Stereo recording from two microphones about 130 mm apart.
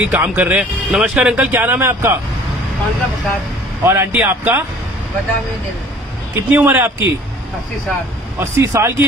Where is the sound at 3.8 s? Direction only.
20° right (ahead or behind).